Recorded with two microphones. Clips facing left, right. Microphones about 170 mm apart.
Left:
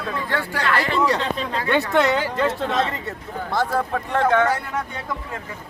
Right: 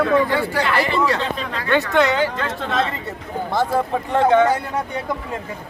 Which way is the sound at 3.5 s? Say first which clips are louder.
Right 2 dB; 15° right (ahead or behind).